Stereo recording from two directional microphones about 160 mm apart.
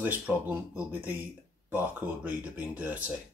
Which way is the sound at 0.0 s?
10° right (ahead or behind).